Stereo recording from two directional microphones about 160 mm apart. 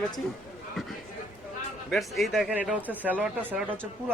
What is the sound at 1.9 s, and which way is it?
Speech, centre (ahead or behind).